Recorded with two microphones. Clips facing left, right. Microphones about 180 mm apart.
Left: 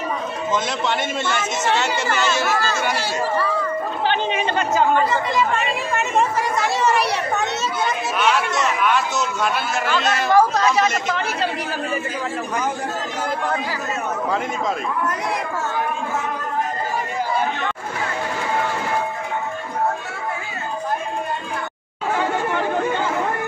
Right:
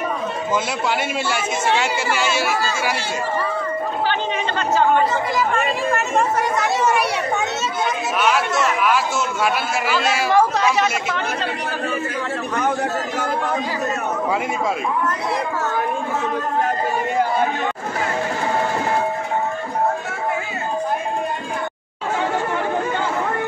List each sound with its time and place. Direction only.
0.8 s speech: 10° right (ahead or behind)
4.1 s speech: 15° left (ahead or behind)
7.8 s speech: centre (ahead or behind)